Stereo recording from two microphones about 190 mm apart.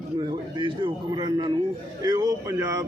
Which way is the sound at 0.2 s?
20° right (ahead or behind).